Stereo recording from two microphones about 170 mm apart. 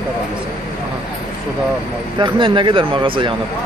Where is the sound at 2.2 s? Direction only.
30° right (ahead or behind).